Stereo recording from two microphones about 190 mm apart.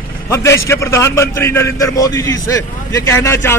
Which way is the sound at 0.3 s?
15° left (ahead or behind).